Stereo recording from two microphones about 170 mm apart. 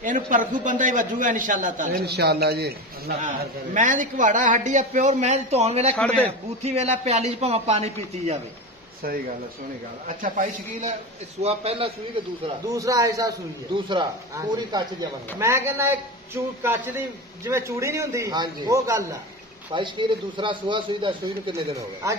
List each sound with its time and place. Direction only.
0.0 s a man's voice: 50° right (ahead or behind)
2.0 s a man's voice: 70° right (ahead or behind)
3.2 s a man's voice: 50° right (ahead or behind)
5.9 s a man's voice: 10° left (ahead or behind)
6.6 s speech: 35° right (ahead or behind)
10.0 s a man's voice: 55° right (ahead or behind)
11.4 s speech: 35° right (ahead or behind)
12.4 s a man's voice: 20° right (ahead or behind)
19.7 s speech: 30° right (ahead or behind)